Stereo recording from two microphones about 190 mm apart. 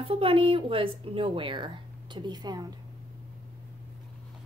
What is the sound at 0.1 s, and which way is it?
Speech, 30° right (ahead or behind).